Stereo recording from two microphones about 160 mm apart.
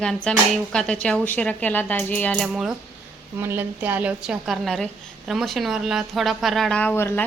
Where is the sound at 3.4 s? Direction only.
15° right (ahead or behind); by 7.2 s 15° left (ahead or behind).